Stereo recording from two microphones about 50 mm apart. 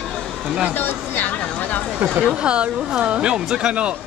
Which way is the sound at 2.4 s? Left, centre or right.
Right.